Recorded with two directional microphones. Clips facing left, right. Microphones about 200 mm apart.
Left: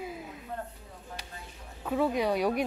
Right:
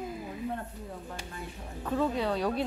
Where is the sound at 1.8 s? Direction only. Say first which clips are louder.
Left 2 dB; 10° left (ahead or behind).